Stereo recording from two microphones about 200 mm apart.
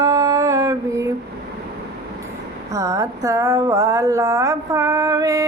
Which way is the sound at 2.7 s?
15° right (ahead or behind).